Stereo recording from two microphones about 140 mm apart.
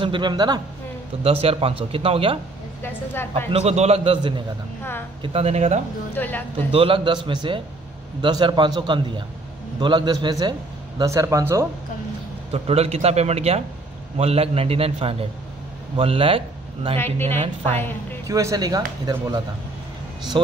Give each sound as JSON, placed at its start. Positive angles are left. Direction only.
{"t": 0.0, "sound": "a man's voice", "side_deg": -35}
{"t": 1.2, "sound": "a man's voice", "side_deg": -45}
{"t": 2.8, "sound": "a woman's voice", "side_deg": 15}
{"t": 3.5, "sound": "a man's voice", "side_deg": -50}
{"t": 6.1, "sound": "a woman's voice", "side_deg": 15}
{"t": 6.7, "sound": "a man's voice", "side_deg": -40}
{"t": 12.4, "sound": "a man's voice", "side_deg": -45}
{"t": 16.9, "sound": "a woman's voice", "side_deg": 15}
{"t": 18.2, "sound": "speech", "side_deg": -25}